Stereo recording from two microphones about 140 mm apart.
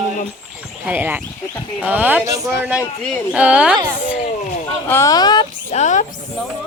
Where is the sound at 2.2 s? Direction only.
25° right (ahead or behind).